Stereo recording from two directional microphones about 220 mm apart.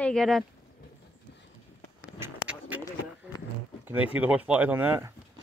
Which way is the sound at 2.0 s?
5° right (ahead or behind).